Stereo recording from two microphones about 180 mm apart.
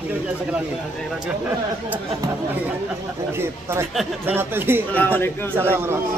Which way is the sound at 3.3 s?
15° right (ahead or behind).